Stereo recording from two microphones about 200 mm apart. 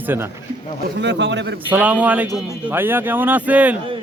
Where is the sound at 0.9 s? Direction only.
60° right (ahead or behind).